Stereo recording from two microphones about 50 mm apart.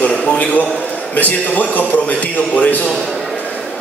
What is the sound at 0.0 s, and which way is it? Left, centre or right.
Speech, centre.